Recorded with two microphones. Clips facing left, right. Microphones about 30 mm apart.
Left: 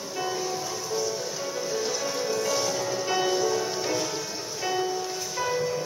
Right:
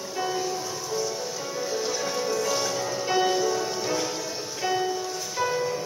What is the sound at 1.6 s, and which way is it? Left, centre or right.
Music, centre.